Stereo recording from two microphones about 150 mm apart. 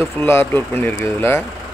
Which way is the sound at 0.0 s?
15° left (ahead or behind).